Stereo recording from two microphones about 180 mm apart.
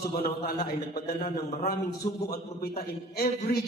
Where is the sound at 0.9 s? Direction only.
60° left (ahead or behind).